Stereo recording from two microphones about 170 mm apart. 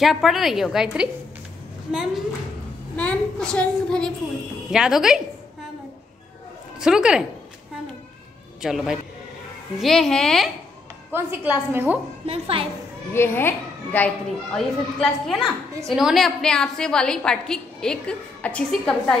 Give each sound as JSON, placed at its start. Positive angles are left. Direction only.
{"t": 0.0, "sound": "a woman's voice", "side_deg": 0}
{"t": 6.8, "sound": "a woman's voice", "side_deg": -5}
{"t": 8.6, "sound": "a woman's voice", "side_deg": -5}
{"t": 11.1, "sound": "a woman's voice", "side_deg": -15}
{"t": 12.3, "sound": "a child's voice", "side_deg": -35}
{"t": 13.1, "sound": "a child's voice", "side_deg": 15}